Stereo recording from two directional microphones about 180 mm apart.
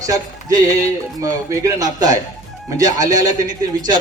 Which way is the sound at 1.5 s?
20° right (ahead or behind).